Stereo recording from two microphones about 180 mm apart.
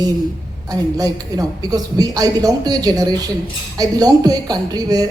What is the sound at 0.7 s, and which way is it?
Speech, 20° right (ahead or behind).